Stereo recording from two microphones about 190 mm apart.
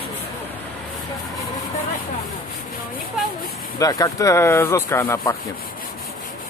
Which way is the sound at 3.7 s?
20° left (ahead or behind).